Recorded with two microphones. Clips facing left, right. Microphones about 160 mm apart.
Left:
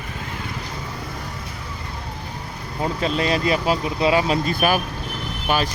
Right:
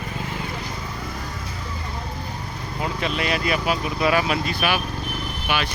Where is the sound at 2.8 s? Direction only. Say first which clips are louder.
Left 4 dB; 30° left (ahead or behind).